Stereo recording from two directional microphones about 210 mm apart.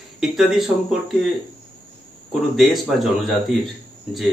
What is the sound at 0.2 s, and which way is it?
Speech, centre (ahead or behind).